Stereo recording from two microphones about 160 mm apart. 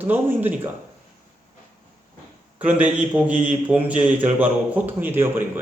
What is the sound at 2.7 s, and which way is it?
A man's voice, 10° right (ahead or behind).